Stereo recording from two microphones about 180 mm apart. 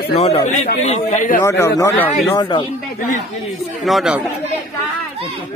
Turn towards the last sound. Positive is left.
turn(degrees=0)  # may be behind; listen again after turning